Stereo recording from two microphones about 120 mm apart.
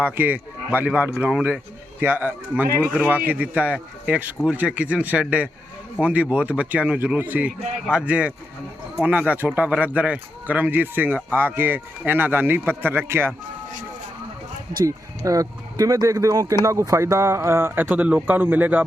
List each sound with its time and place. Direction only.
0.0 s speech: 15° right (ahead or behind)
14.8 s speech: 25° right (ahead or behind)